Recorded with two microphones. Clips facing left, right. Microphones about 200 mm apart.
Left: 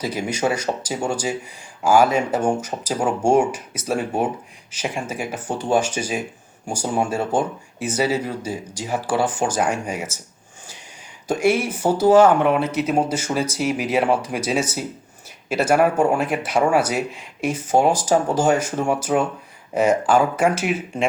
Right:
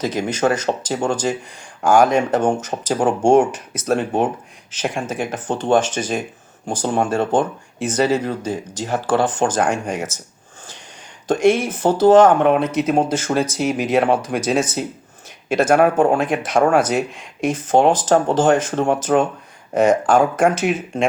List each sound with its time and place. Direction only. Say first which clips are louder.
0.0 s speech: right 3 dB; 10° left (ahead or behind)
11.3 s speech: right 3 dB; 10° left (ahead or behind)
12.3 s speech: right 3 dB; 55° right (ahead or behind)
12.5 s speech: right 3 dB; 5° left (ahead or behind)